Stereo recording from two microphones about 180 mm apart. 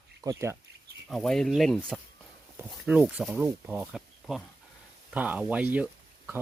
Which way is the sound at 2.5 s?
10° right (ahead or behind).